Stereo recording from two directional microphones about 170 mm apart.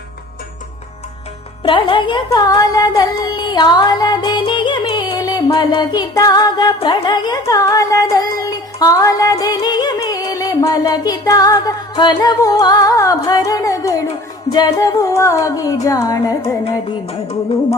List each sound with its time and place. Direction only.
1.6 s speech: 30° left (ahead or behind)
6.7 s music: 25° left (ahead or behind)
17.1 s music: 35° left (ahead or behind)